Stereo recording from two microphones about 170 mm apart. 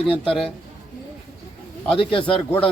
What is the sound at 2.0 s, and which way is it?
Speech, 30° left (ahead or behind).